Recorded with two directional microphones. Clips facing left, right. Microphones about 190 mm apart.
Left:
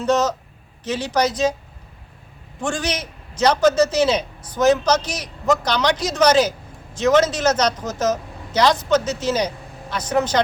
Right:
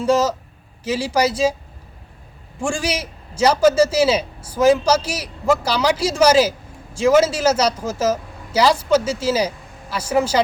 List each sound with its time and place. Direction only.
0.0 s a man's voice: 10° right (ahead or behind)
2.6 s a man's voice: 10° right (ahead or behind)